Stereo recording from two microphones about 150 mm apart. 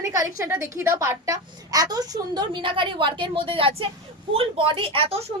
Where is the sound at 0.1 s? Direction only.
20° right (ahead or behind).